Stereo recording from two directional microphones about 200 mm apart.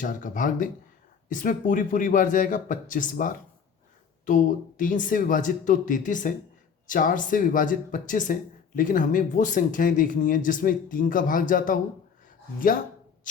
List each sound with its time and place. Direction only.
0.0 s speech: 40° left (ahead or behind)
4.8 s speech: 40° left (ahead or behind)